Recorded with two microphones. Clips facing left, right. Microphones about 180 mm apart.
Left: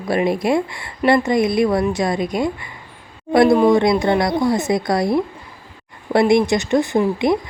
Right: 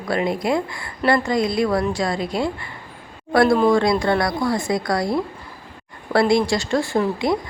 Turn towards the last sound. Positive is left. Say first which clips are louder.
# left 3 dB
turn(degrees=20)  # may be behind; listen again after turning